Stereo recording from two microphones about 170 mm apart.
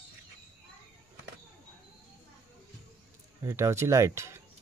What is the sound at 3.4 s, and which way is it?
Speech, 15° right (ahead or behind).